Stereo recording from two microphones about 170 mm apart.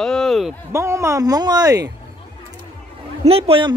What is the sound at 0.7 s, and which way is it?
Speech, 15° right (ahead or behind).